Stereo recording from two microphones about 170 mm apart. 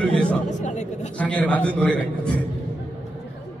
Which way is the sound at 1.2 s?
10° left (ahead or behind).